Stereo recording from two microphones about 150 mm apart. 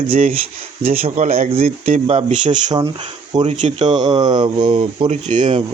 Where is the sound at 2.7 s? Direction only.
35° right (ahead or behind).